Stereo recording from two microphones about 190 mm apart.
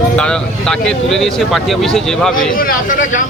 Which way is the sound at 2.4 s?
45° left (ahead or behind).